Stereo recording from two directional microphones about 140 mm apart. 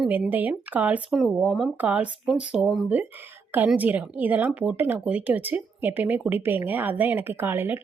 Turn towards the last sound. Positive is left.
turn(degrees=-15)  # may be behind; listen again after turning